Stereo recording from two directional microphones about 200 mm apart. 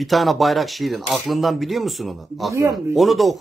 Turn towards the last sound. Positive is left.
turn(degrees=0)  # may be behind; listen again after turning